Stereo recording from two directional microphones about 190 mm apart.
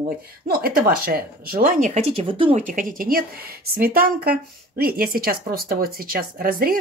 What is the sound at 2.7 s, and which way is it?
Speech, 45° right (ahead or behind).